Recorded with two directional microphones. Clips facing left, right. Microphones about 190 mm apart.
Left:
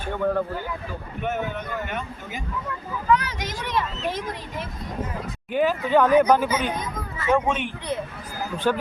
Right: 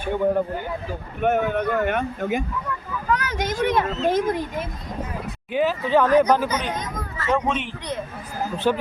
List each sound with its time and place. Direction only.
0.0 s speech: 15° right (ahead or behind)
1.2 s a child's voice: 55° right (ahead or behind)
5.5 s speech: centre (ahead or behind)
8.7 s speech: 5° right (ahead or behind)